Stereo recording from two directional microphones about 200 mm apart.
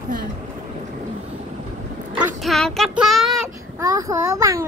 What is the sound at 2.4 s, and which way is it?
Speech, centre (ahead or behind).